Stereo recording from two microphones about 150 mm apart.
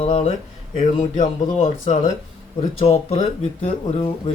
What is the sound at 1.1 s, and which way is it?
Speech, 55° left (ahead or behind).